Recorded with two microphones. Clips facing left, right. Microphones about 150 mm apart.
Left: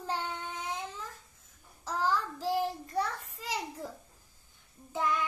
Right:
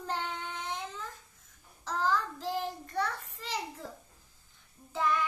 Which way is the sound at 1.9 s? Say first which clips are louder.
Even; 10° left (ahead or behind).